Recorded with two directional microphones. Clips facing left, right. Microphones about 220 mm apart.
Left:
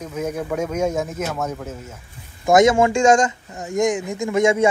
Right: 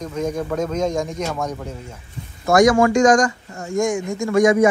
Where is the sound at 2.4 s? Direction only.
20° left (ahead or behind).